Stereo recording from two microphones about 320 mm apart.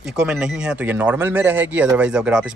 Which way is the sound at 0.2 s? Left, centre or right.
Centre.